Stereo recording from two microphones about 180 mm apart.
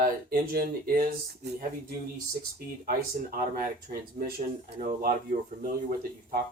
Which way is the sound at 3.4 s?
55° right (ahead or behind).